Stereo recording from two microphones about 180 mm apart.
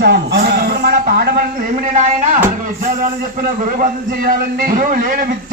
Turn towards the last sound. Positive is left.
turn(degrees=-50)  # may be behind; listen again after turning